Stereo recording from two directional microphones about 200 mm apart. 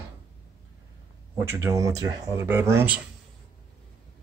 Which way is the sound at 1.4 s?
15° right (ahead or behind).